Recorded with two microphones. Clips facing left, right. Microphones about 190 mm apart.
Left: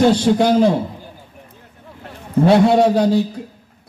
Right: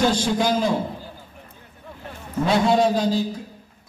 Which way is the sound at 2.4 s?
65° left (ahead or behind).